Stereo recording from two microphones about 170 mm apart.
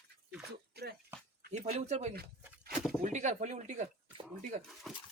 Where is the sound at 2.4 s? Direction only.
Centre (ahead or behind).